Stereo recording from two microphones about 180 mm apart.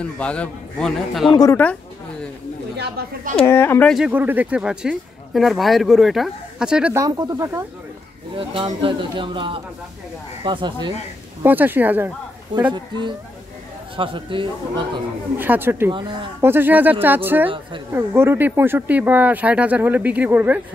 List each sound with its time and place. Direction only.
0.0 s speech: 5° left (ahead or behind)
1.3 s speech: 20° left (ahead or behind)
3.4 s speech: 15° left (ahead or behind)
3.9 s speech: 5° right (ahead or behind)
7.0 s speech: 20° right (ahead or behind)
11.4 s speech: 10° right (ahead or behind)
12.7 s speech: 25° right (ahead or behind)
15.3 s speech: 10° right (ahead or behind)
15.9 s speech: 25° right (ahead or behind)
16.3 s speech: 10° right (ahead or behind)